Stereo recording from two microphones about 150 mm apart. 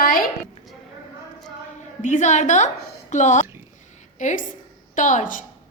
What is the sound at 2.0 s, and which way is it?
A woman's voice, 55° left (ahead or behind).